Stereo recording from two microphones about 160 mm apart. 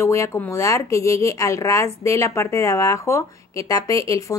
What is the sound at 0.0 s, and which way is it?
Speech, 20° left (ahead or behind).